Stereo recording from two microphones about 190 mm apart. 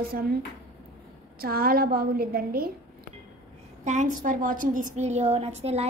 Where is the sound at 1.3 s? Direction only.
50° right (ahead or behind).